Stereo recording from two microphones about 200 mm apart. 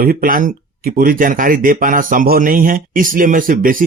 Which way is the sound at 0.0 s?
45° right (ahead or behind).